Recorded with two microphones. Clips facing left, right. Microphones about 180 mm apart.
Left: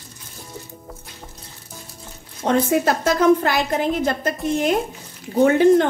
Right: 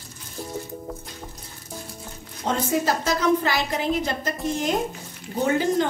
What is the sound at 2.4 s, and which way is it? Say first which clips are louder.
A woman's voice: left 5 dB; 60° left (ahead or behind).